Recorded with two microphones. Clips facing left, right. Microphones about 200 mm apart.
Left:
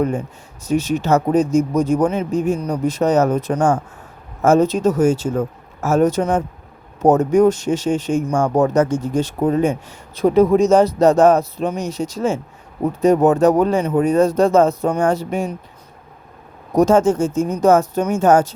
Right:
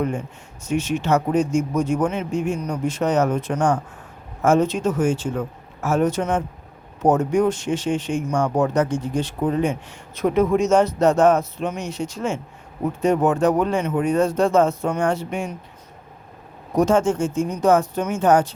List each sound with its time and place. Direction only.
0.6 s speech: 40° left (ahead or behind)
16.7 s speech: 40° left (ahead or behind)